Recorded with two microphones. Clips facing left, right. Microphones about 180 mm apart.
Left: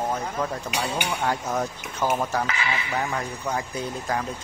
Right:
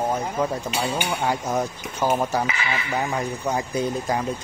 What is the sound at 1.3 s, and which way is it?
Speech, 10° right (ahead or behind).